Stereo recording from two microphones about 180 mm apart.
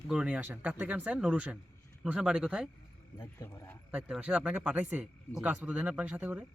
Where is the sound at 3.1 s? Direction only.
15° left (ahead or behind).